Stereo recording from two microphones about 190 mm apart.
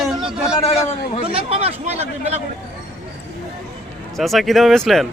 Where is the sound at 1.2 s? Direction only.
30° right (ahead or behind).